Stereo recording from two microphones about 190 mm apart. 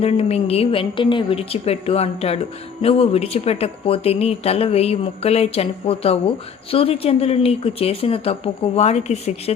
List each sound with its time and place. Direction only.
0.0 s speech: 30° left (ahead or behind)